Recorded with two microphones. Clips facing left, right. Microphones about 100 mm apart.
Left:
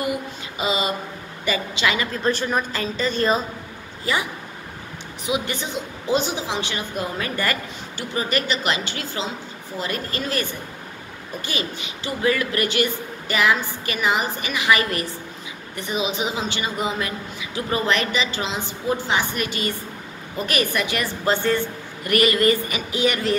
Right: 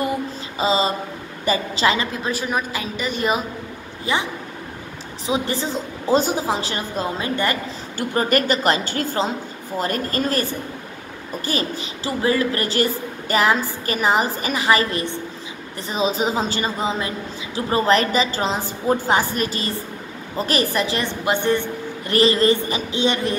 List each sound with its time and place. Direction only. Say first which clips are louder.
0.6 s a woman's voice: right 4 dB; 30° right (ahead or behind)
2.2 s a woman's voice: left 5 dB; 5° right (ahead or behind)
4.0 s speech: right 1 dB; 20° right (ahead or behind)
5.2 s a woman's voice: right 3 dB; 35° right (ahead or behind)
7.2 s a woman's voice: right 2 dB; 25° right (ahead or behind)
8.0 s a woman's voice: right 5 dB; 50° right (ahead or behind)
16.7 s a woman's voice: right 2 dB; 25° right (ahead or behind)
21.3 s a woman's voice: right 1 dB; 20° right (ahead or behind)